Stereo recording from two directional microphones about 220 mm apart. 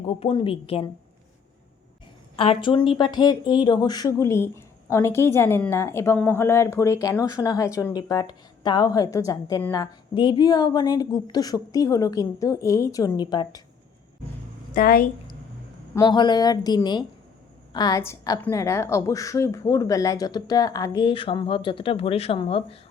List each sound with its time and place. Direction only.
0.2 s a woman's voice: 25° left (ahead or behind)
2.3 s a woman's voice: 25° left (ahead or behind)
14.7 s a woman's voice: 40° left (ahead or behind)
16.0 s a woman's voice: 20° left (ahead or behind)